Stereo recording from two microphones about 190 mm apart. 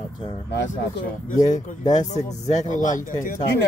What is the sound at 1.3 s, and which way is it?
Speech, 20° left (ahead or behind).